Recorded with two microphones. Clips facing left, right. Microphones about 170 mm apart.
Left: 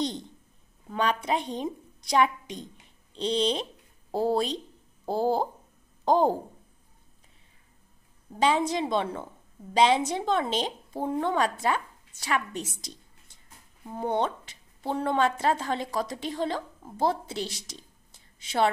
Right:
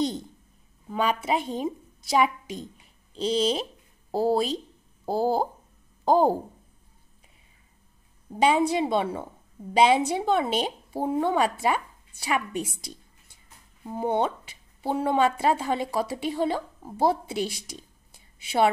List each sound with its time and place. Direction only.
0.0 s a woman's voice: 5° right (ahead or behind)
8.3 s a woman's voice: 10° right (ahead or behind)